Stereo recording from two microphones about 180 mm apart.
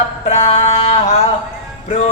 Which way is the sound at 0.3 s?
35° left (ahead or behind).